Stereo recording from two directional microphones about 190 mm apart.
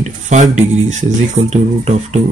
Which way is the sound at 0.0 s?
40° right (ahead or behind).